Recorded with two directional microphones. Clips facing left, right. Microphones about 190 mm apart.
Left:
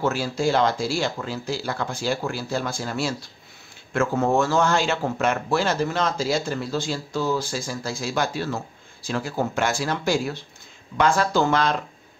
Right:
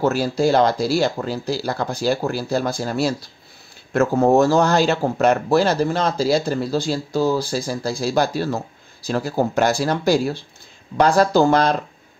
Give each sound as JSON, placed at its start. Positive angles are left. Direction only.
{"t": 0.0, "sound": "speech", "side_deg": -40}